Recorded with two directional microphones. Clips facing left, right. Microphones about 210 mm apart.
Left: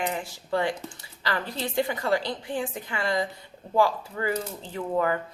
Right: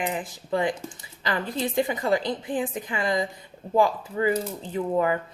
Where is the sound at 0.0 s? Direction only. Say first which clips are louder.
Right 1 dB; 20° right (ahead or behind).